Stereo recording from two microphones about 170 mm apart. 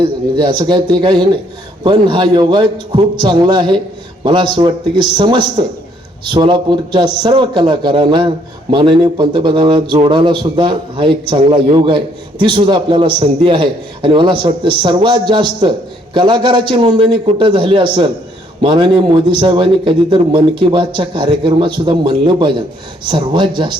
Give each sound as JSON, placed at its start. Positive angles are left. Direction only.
{"t": 0.0, "sound": "speech", "side_deg": -30}